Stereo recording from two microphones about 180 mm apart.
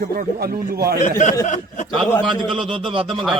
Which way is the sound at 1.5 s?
40° left (ahead or behind).